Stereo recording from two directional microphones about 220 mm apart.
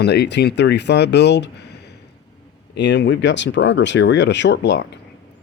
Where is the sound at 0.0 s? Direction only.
50° left (ahead or behind).